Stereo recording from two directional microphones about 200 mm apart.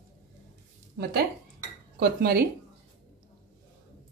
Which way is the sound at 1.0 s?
55° right (ahead or behind).